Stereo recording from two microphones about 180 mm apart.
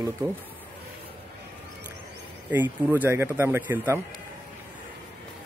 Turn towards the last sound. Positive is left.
turn(degrees=-10)  # may be behind; listen again after turning